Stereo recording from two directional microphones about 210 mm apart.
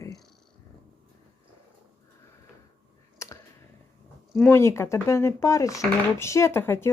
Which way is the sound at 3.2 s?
15° left (ahead or behind).